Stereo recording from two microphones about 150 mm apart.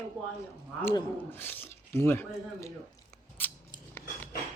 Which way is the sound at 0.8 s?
15° left (ahead or behind).